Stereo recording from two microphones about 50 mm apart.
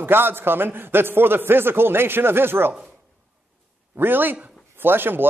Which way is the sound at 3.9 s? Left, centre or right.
Right.